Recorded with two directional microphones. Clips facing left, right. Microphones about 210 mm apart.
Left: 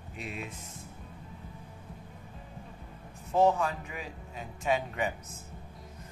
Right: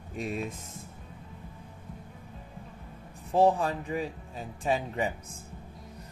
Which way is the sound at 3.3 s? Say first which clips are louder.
Right 2 dB; 35° right (ahead or behind).